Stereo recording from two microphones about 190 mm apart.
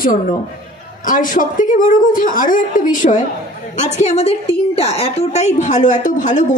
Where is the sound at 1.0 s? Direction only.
45° left (ahead or behind).